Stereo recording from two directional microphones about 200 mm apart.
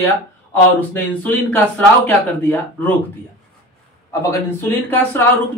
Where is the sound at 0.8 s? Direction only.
10° left (ahead or behind).